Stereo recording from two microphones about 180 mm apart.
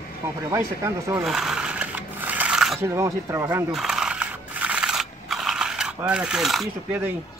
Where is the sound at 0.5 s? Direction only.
15° right (ahead or behind).